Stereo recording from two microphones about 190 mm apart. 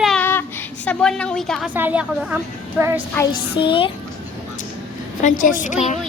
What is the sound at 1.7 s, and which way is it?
A woman's voice, 10° right (ahead or behind).